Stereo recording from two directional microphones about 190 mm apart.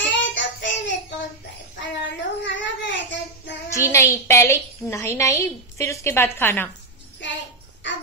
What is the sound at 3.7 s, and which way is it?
A woman's voice, 15° left (ahead or behind).